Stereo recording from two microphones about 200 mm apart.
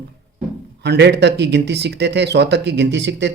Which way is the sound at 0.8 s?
55° right (ahead or behind).